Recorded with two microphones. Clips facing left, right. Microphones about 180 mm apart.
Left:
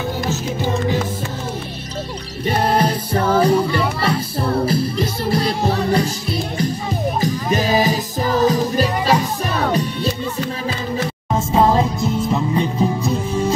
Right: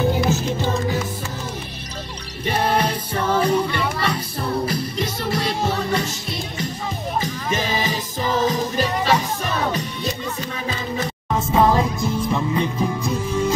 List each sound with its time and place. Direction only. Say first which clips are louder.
2.4 s music: left 3 dB; 35° left (ahead or behind)
11.5 s music: left 2 dB; 25° left (ahead or behind)